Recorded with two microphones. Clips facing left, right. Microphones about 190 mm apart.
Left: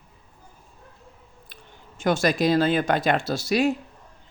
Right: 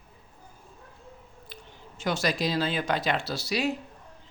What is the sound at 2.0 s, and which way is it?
Speech, 50° left (ahead or behind).